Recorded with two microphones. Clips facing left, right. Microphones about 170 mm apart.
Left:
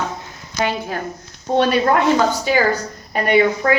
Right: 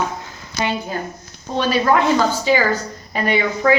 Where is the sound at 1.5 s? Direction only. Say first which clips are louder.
Left 2 dB; 60° left (ahead or behind).